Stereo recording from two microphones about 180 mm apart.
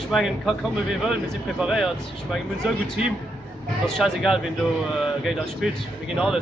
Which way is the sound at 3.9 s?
Centre (ahead or behind).